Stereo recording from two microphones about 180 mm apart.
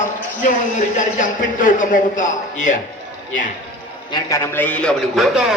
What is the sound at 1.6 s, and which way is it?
A man's voice, 45° left (ahead or behind).